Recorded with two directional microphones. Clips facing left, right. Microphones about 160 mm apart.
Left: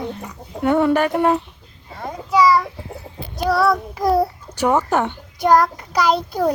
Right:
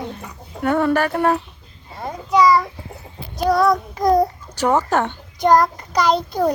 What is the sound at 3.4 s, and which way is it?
A child's voice, 5° left (ahead or behind).